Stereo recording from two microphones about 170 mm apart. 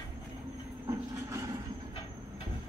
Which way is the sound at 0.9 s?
20° right (ahead or behind).